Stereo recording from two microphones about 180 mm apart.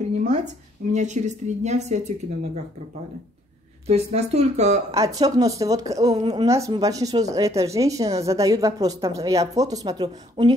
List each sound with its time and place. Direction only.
0.9 s speech: 40° right (ahead or behind)
3.8 s speech: 35° right (ahead or behind)
4.9 s a woman's voice: 20° right (ahead or behind)